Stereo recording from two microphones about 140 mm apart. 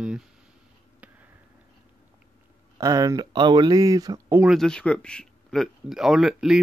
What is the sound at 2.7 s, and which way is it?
Speech, 25° right (ahead or behind).